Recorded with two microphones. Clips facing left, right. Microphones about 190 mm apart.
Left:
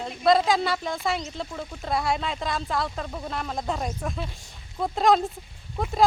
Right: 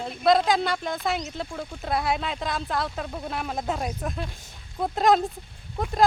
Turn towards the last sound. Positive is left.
turn(degrees=0)  # may be behind; listen again after turning